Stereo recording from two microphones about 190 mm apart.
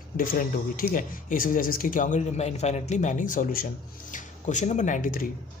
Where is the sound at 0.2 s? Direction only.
50° left (ahead or behind).